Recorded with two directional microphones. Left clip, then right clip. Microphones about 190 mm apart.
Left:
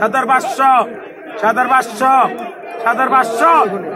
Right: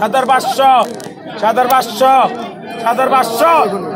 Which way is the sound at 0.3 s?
35° right (ahead or behind).